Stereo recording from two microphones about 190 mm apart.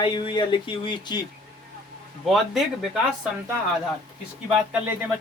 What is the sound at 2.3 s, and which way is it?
Speech, centre (ahead or behind).